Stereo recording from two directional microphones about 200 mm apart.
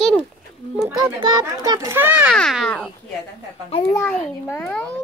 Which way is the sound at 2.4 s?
Centre (ahead or behind).